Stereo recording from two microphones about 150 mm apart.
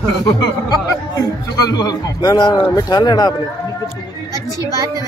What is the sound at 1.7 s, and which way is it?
A man's voice, 25° left (ahead or behind).